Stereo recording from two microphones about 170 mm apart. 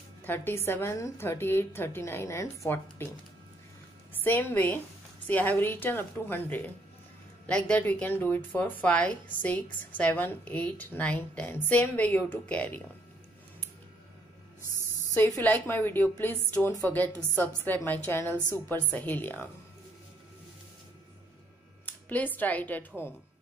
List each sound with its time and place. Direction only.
0.2 s speech: 10° left (ahead or behind)
4.2 s speech: 10° left (ahead or behind)
15.1 s speech: 10° left (ahead or behind)
21.8 s speech: 10° left (ahead or behind)